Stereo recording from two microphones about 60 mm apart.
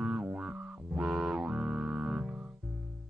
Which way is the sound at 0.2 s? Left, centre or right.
Right.